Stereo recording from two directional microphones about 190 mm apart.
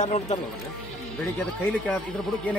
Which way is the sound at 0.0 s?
35° left (ahead or behind).